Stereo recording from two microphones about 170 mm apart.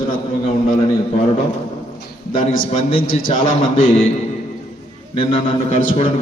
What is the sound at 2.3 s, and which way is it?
Speech, 45° left (ahead or behind).